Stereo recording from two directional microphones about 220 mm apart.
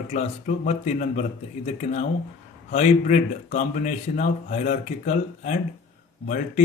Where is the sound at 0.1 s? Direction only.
35° left (ahead or behind).